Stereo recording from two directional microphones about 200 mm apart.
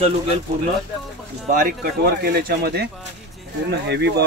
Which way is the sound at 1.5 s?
45° right (ahead or behind).